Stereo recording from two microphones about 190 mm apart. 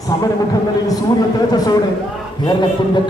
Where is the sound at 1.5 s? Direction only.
20° left (ahead or behind).